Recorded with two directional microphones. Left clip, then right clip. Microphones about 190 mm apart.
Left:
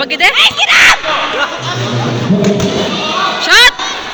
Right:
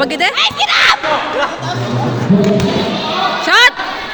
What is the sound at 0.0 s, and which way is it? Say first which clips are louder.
Speech: left 3 dB; 15° right (ahead or behind).